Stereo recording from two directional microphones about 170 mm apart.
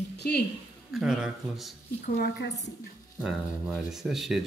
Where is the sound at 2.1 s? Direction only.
90° left.